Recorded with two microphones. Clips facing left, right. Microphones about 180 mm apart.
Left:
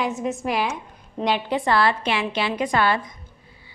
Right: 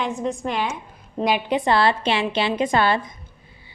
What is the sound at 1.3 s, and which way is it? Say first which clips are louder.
A woman's voice: right 1 dB; 15° right (ahead or behind).